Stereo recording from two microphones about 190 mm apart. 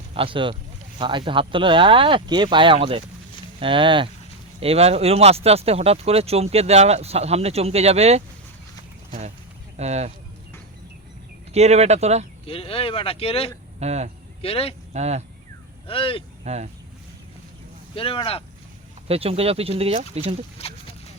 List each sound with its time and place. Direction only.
0.1 s speech: 30° right (ahead or behind)
9.7 s speech: 35° right (ahead or behind)
11.5 s speech: 35° right (ahead or behind)
12.5 s speech: 30° left (ahead or behind)
13.7 s speech: 35° right (ahead or behind)
14.4 s speech: 30° left (ahead or behind)
14.9 s speech: 35° right (ahead or behind)
15.9 s speech: 30° left (ahead or behind)
16.4 s speech: 35° right (ahead or behind)
17.9 s speech: 30° left (ahead or behind)
19.0 s speech: 30° right (ahead or behind)
20.6 s a sound: 30° left (ahead or behind)